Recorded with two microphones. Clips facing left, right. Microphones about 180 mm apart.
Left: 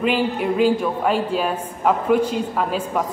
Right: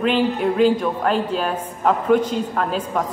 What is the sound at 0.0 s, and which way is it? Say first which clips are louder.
A woman's voice: right 2 dB; 5° left (ahead or behind).